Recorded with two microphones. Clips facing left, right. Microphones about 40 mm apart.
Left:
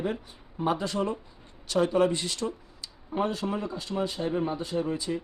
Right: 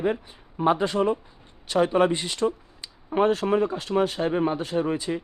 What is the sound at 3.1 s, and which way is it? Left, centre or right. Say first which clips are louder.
Speech: right 8 dB; right.